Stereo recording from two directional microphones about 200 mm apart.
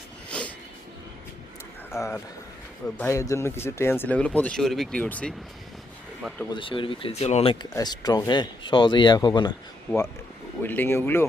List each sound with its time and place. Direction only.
0.3 s a sound: 5° left (ahead or behind)
1.9 s speech: 15° left (ahead or behind)
6.5 s speech: 25° left (ahead or behind)
7.7 s speech: 20° left (ahead or behind)
9.9 s speech: 10° left (ahead or behind)